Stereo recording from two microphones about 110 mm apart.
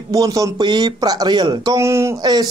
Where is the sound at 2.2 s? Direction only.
40° right (ahead or behind).